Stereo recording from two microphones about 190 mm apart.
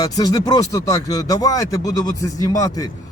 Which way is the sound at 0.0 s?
20° left (ahead or behind).